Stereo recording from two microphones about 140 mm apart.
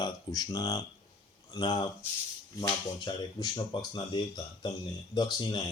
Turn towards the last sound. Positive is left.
turn(degrees=30)  # may be behind; listen again after turning